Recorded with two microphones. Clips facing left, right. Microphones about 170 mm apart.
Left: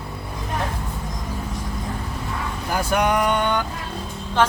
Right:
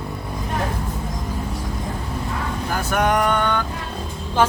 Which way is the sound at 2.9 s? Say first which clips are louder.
Right 1 dB; 50° right (ahead or behind).